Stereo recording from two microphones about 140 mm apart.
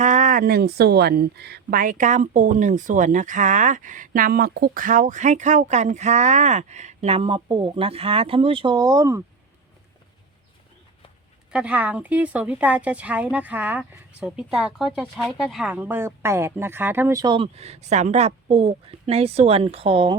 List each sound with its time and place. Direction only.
0.0 s a sound: 60° right (ahead or behind); by 0.6 s 85° right
1.7 s speech: 75° right (ahead or behind); by 9.2 s 20° right (ahead or behind)
11.5 s speech: 10° right (ahead or behind)
17.3 s speech: 45° right (ahead or behind)